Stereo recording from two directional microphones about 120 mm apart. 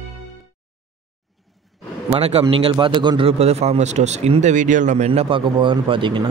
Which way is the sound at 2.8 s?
40° right (ahead or behind).